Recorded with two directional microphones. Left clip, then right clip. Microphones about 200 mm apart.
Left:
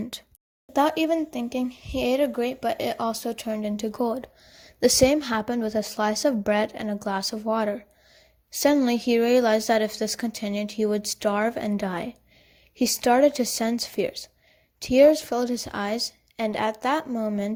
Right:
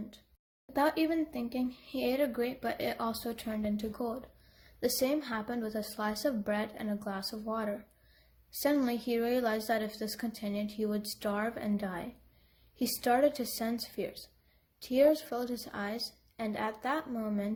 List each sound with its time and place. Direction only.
0.7 s speech: 35° left (ahead or behind)